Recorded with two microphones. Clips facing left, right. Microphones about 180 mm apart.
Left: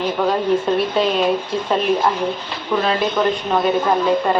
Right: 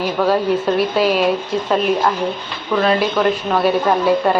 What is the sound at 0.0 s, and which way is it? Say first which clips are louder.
A woman's voice: right 2 dB; 5° right (ahead or behind).